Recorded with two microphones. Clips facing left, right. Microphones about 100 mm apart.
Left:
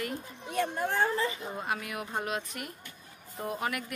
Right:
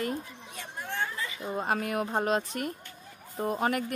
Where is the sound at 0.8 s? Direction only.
35° left (ahead or behind).